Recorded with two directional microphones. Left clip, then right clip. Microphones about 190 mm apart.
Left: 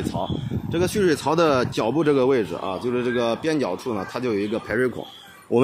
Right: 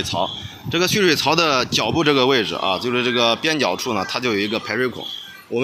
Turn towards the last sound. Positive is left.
turn(degrees=45)  # may be behind; listen again after turning